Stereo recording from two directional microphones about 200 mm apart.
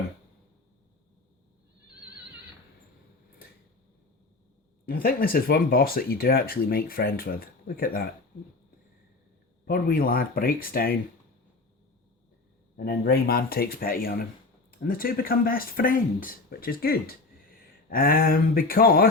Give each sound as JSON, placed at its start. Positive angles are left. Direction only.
{"t": 4.9, "sound": "speech", "side_deg": 45}
{"t": 9.6, "sound": "speech", "side_deg": 45}
{"t": 12.7, "sound": "speech", "side_deg": 50}